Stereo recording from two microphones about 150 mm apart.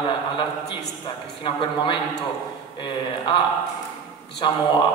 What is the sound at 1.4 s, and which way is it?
Speech, 35° left (ahead or behind).